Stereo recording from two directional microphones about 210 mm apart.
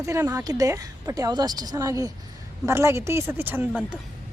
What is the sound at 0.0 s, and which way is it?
A woman's voice, 15° right (ahead or behind).